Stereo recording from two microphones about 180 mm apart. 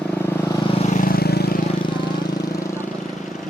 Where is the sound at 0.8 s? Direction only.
45° left (ahead or behind).